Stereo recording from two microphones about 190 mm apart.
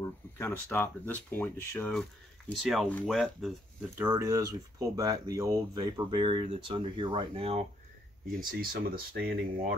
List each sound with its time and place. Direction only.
0.4 s speech: 10° left (ahead or behind)
4.0 s speech: 15° right (ahead or behind); by 7.6 s 30° right (ahead or behind)
8.4 s speech: 50° right (ahead or behind)